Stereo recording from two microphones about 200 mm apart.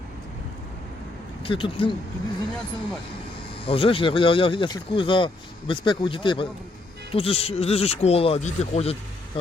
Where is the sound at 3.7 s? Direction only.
25° left (ahead or behind).